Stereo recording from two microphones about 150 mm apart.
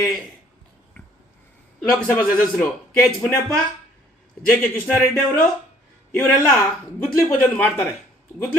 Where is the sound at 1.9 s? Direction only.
10° left (ahead or behind).